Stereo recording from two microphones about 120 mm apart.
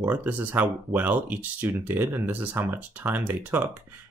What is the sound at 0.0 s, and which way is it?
Speech, 15° right (ahead or behind).